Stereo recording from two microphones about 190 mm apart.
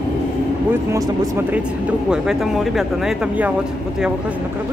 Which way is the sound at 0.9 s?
15° right (ahead or behind).